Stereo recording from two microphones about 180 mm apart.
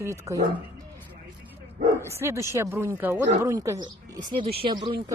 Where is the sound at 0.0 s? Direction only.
15° right (ahead or behind).